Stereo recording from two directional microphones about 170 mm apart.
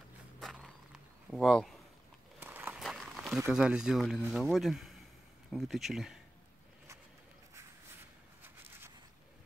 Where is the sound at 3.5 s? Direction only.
5° right (ahead or behind).